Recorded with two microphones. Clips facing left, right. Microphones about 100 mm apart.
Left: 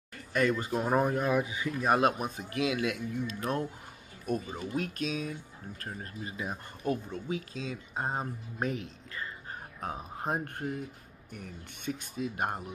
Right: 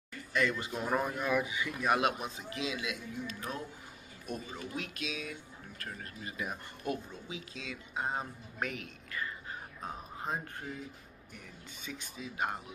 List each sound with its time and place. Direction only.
0.3 s speech: 45° left (ahead or behind)
7.1 s speech: 50° left (ahead or behind); by 9.3 s 30° left (ahead or behind)
9.8 s speech: 55° left (ahead or behind)